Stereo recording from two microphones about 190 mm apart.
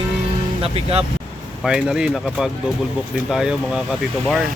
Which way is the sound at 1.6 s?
5° right (ahead or behind).